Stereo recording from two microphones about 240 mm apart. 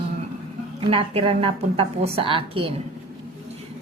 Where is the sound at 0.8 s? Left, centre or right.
Right.